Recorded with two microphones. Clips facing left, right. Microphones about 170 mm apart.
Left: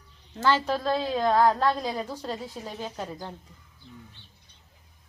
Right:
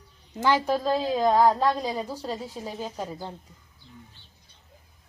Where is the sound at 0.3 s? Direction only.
15° right (ahead or behind).